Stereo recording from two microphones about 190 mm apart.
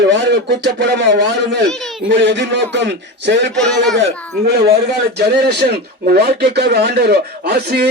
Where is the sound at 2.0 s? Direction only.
65° right (ahead or behind).